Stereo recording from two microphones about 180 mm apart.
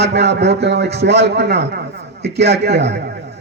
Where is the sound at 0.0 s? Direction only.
70° right (ahead or behind).